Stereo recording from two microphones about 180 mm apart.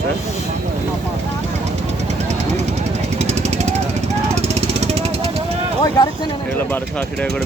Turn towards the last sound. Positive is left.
turn(degrees=20)  # may be behind; listen again after turning